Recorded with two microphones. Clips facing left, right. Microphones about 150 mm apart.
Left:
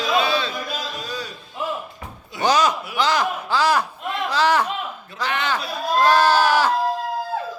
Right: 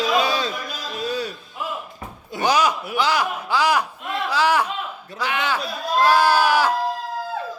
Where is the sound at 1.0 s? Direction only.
60° right (ahead or behind).